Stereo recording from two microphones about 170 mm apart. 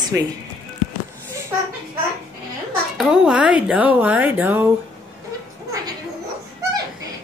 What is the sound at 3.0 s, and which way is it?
Speech, 5° right (ahead or behind).